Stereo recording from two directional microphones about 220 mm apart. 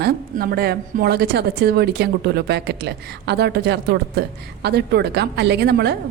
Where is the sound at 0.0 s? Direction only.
45° right (ahead or behind).